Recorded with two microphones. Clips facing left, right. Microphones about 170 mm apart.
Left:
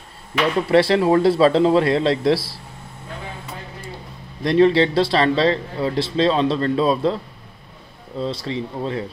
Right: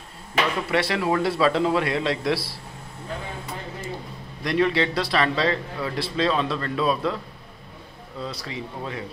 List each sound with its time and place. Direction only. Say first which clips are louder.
0.7 s a man's voice: left 8 dB; 30° left (ahead or behind)
4.4 s a man's voice: left 7 dB; 30° left (ahead or behind)
8.2 s a man's voice: left 8 dB; 25° left (ahead or behind)